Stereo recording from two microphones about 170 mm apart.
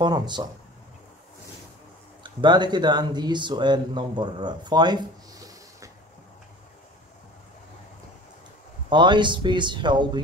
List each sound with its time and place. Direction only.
0.0 s speech: 25° right (ahead or behind)
2.2 s speech: 25° right (ahead or behind)
8.9 s speech: 25° right (ahead or behind)